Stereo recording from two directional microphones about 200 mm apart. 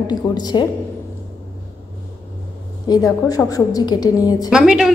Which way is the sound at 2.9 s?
15° left (ahead or behind).